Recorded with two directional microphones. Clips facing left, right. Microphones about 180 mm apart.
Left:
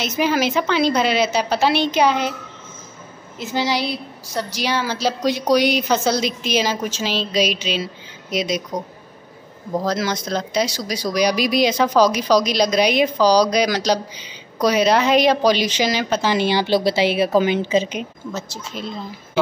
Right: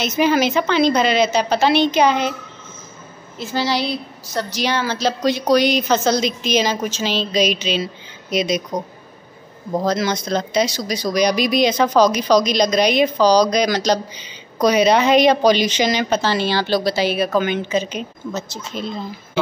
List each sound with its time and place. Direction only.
0.2 s speech: 5° left (ahead or behind)
3.3 s a woman's voice: 20° left (ahead or behind); by 8.6 s centre (ahead or behind)
9.8 s speech: 5° left (ahead or behind)
16.3 s a woman's voice: 20° left (ahead or behind)
18.7 s speech: 5° left (ahead or behind)